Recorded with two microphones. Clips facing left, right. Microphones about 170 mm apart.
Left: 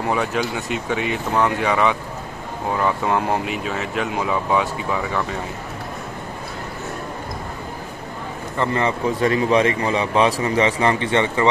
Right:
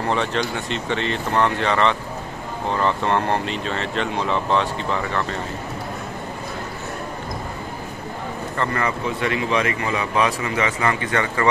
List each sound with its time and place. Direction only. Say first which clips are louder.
0.0 s speech: left 1 dB; 5° left (ahead or behind)
8.5 s a man's voice: left 3 dB; 20° left (ahead or behind)
9.2 s a man's voice: left 5 dB; 35° left (ahead or behind)